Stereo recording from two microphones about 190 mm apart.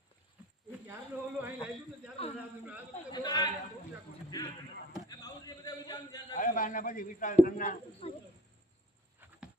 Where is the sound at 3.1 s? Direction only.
20° left (ahead or behind).